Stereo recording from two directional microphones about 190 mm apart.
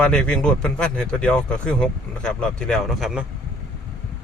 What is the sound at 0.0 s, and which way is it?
Speech, 5° left (ahead or behind).